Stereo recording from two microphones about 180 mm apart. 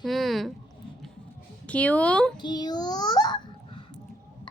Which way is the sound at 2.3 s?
25° left (ahead or behind).